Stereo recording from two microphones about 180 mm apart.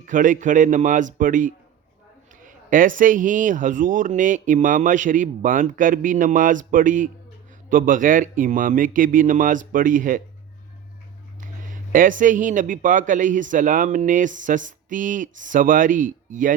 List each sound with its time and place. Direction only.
0.0 s speech: 45° right (ahead or behind)
11.3 s speech: 50° right (ahead or behind)